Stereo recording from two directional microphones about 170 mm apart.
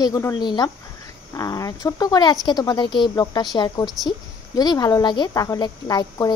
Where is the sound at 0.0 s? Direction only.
20° left (ahead or behind).